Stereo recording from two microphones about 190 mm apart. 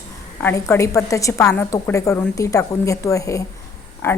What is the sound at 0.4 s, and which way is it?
A woman's voice, 15° left (ahead or behind).